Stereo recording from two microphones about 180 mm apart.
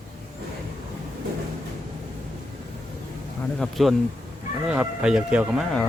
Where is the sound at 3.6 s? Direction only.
Centre (ahead or behind).